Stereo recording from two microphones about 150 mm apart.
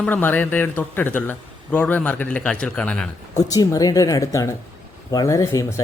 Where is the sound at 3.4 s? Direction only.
25° left (ahead or behind).